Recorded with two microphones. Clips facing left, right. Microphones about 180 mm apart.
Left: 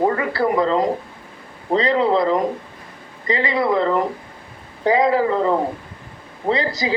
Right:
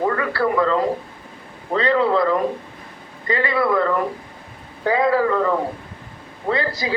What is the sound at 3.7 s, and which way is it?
Speech, 25° left (ahead or behind).